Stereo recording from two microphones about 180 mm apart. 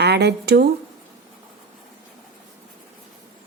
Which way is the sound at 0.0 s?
65° right (ahead or behind).